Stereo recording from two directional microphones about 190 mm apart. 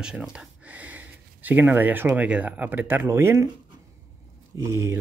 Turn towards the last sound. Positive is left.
turn(degrees=-15)  # may be behind; listen again after turning